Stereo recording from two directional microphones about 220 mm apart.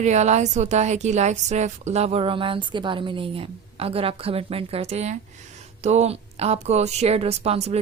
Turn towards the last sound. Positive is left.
turn(degrees=-30)  # may be behind; listen again after turning